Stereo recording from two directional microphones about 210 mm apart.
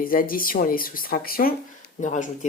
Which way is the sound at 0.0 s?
45° left (ahead or behind).